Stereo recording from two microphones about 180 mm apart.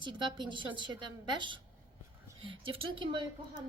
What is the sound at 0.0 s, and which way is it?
Speech, 25° right (ahead or behind).